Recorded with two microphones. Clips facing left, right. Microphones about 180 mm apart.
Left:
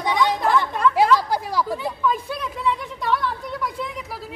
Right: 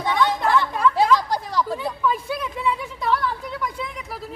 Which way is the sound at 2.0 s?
5° right (ahead or behind).